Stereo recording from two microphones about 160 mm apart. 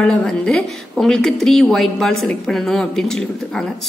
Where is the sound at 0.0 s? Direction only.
5° left (ahead or behind).